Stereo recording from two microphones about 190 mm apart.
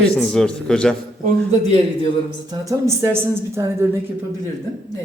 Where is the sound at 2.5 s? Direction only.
15° right (ahead or behind).